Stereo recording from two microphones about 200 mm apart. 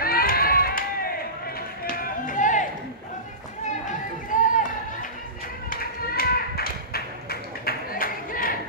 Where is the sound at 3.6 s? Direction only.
40° left (ahead or behind).